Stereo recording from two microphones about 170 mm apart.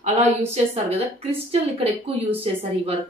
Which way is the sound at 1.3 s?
40° right (ahead or behind).